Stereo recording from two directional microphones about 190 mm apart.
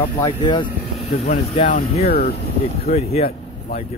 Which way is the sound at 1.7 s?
50° left (ahead or behind).